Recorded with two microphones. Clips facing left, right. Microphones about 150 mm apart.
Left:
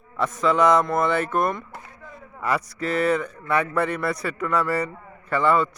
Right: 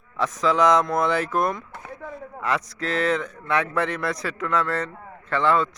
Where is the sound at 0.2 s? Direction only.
5° left (ahead or behind).